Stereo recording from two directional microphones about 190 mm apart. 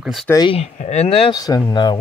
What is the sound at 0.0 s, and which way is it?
Speech, centre (ahead or behind).